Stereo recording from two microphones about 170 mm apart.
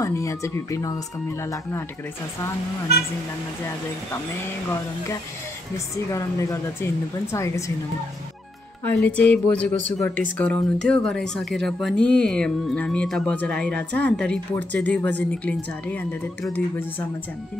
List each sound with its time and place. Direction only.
0.0 s speech: 20° left (ahead or behind)
6.1 s speech: 15° left (ahead or behind)
8.8 s speech: 10° left (ahead or behind)